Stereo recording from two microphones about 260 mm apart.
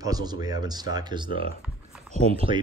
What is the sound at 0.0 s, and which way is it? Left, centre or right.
A man's voice, centre.